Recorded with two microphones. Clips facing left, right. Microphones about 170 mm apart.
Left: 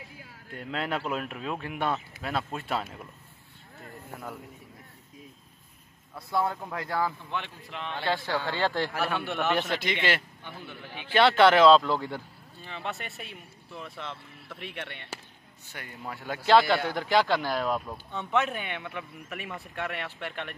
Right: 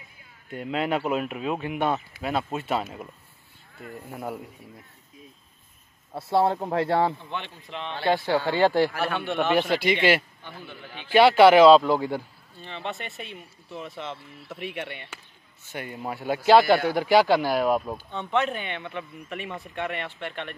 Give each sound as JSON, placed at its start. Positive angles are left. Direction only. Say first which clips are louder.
{"t": 0.0, "sound": "a sound", "louder": "left 7 dB", "side_deg": 90}
{"t": 0.5, "sound": "speech", "louder": "right 6 dB", "side_deg": -10}
{"t": 6.1, "sound": "speech", "louder": "right 7 dB", "side_deg": -30}
{"t": 7.3, "sound": "speech", "louder": "right 1 dB", "side_deg": 5}
{"t": 8.0, "sound": "speech", "louder": "right 7 dB", "side_deg": -15}
{"t": 8.9, "sound": "speech", "louder": "right 2 dB", "side_deg": 0}
{"t": 9.4, "sound": "speech", "louder": "right 6 dB", "side_deg": -10}
{"t": 12.6, "sound": "speech", "louder": "right 3 dB", "side_deg": 5}
{"t": 15.7, "sound": "speech", "louder": "right 7 dB", "side_deg": -20}
{"t": 18.3, "sound": "a man's voice", "louder": "right 2 dB", "side_deg": 5}